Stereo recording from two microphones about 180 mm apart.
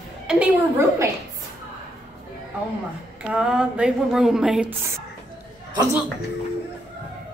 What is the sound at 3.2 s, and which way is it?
A woman's voice, 5° right (ahead or behind).